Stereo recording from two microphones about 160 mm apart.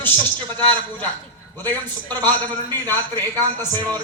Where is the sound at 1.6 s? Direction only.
30° right (ahead or behind).